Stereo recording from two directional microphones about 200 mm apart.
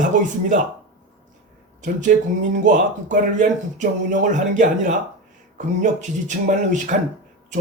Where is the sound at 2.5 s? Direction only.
40° right (ahead or behind).